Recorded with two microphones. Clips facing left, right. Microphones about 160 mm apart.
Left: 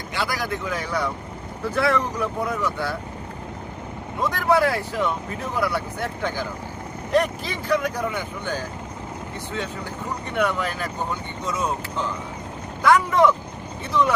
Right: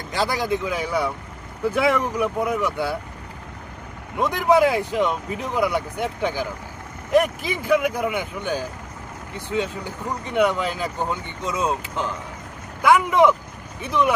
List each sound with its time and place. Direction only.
0.3 s speech: 20° right (ahead or behind)
4.2 s speech: 15° right (ahead or behind)